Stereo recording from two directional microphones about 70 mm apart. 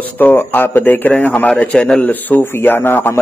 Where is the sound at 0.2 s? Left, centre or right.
Left.